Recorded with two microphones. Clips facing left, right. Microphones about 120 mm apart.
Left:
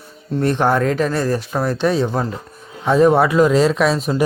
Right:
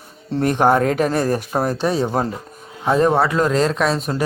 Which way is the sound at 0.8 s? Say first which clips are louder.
Even; 45° right (ahead or behind).